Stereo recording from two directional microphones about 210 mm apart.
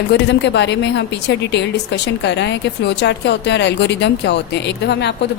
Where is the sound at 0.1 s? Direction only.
55° left (ahead or behind).